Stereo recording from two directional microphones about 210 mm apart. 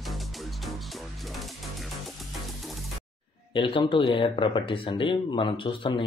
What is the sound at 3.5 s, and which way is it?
Speech, 25° left (ahead or behind).